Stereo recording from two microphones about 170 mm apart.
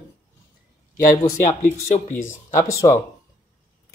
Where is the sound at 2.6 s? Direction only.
15° left (ahead or behind).